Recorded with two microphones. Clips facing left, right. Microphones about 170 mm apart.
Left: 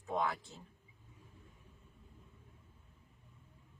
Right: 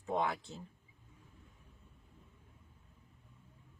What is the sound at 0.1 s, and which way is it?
Speech, 25° right (ahead or behind).